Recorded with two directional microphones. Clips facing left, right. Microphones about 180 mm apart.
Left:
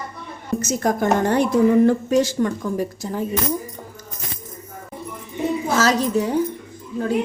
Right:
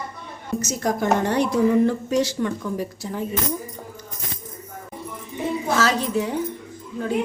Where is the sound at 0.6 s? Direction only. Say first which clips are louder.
Left 3 dB; 50° left (ahead or behind).